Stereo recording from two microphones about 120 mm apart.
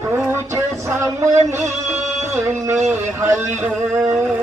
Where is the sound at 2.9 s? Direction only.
20° right (ahead or behind).